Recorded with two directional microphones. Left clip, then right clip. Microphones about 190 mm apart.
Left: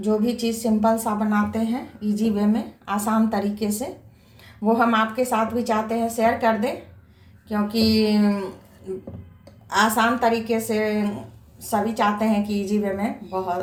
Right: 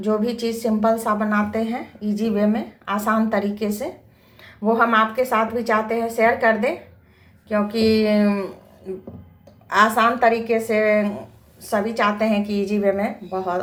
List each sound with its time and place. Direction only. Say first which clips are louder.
0.0 s a woman's voice: right 1 dB; 10° right (ahead or behind)
9.6 s a woman's voice: right 3 dB; 10° right (ahead or behind)